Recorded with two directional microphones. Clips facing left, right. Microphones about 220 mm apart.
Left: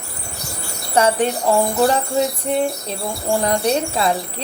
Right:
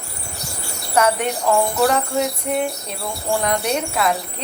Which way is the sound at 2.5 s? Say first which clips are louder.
Left 2 dB; 30° left (ahead or behind).